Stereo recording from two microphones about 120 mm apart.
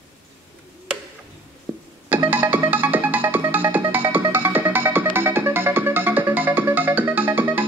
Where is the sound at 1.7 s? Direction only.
20° right (ahead or behind).